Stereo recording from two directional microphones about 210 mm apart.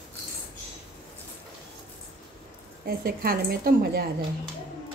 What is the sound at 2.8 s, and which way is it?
Speech, 45° right (ahead or behind).